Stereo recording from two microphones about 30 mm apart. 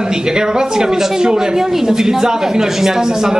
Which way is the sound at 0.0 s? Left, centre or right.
Right.